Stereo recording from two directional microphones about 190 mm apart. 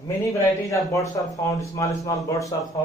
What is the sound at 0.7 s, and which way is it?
A man's voice, 15° left (ahead or behind).